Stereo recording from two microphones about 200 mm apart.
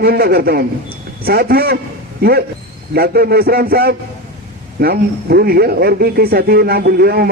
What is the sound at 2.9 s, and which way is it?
A man's voice, 50° right (ahead or behind).